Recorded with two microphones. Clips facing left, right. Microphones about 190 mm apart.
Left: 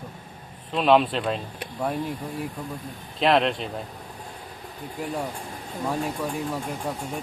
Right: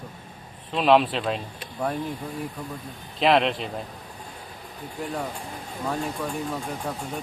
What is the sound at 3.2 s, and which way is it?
Speech, centre (ahead or behind).